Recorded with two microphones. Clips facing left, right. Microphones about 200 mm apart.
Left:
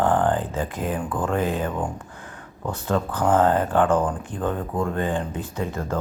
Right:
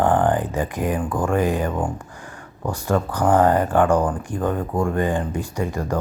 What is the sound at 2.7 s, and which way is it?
Speech, 10° right (ahead or behind).